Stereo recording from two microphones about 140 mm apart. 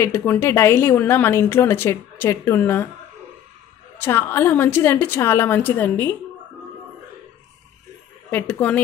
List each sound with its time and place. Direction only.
0.0 s a woman's voice: 15° left (ahead or behind)
4.0 s a woman's voice: 15° left (ahead or behind)
8.3 s a woman's voice: 10° left (ahead or behind)